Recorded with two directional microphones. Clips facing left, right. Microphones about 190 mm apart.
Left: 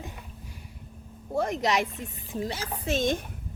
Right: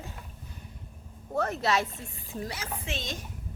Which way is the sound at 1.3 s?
15° left (ahead or behind).